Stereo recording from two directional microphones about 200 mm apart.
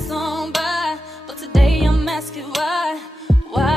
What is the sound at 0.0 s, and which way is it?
Music, centre (ahead or behind).